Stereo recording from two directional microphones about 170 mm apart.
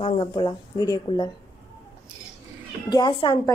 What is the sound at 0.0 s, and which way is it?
A woman's voice, 35° left (ahead or behind).